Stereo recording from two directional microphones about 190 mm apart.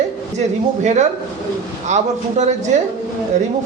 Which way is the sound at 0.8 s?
40° right (ahead or behind).